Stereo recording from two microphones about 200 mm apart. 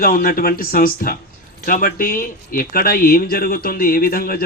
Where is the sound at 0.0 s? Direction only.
45° left (ahead or behind).